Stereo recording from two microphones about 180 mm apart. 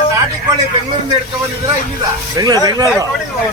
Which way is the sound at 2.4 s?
20° right (ahead or behind).